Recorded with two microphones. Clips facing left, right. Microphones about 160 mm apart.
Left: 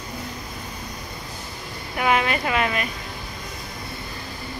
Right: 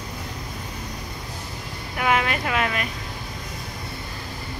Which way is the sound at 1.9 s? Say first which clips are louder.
Left 1 dB; centre (ahead or behind).